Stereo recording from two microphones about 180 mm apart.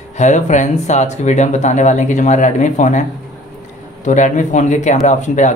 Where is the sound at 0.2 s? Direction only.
40° left (ahead or behind).